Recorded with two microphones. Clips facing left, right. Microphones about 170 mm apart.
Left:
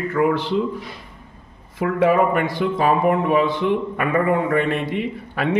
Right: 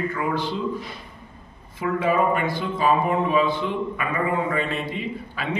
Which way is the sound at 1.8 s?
65° left (ahead or behind).